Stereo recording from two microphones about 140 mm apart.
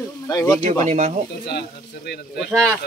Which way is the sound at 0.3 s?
25° left (ahead or behind).